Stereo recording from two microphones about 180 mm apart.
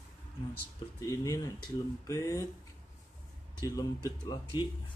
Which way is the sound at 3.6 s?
20° left (ahead or behind).